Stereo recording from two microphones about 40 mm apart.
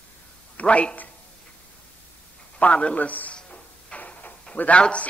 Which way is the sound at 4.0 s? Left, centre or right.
Left.